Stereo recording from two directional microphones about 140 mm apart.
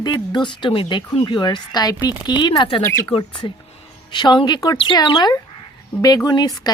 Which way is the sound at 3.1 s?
35° left (ahead or behind).